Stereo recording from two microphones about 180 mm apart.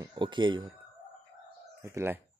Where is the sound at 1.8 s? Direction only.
15° right (ahead or behind).